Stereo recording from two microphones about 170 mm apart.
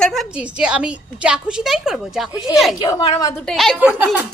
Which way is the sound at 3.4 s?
Centre (ahead or behind).